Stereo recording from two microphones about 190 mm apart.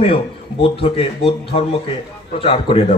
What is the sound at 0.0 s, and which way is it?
A man's voice, 30° left (ahead or behind).